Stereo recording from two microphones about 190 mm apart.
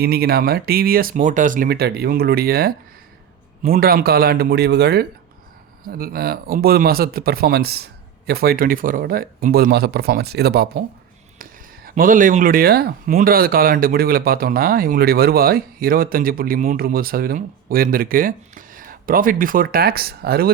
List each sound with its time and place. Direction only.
0.0 s a man's voice: 55° right (ahead or behind)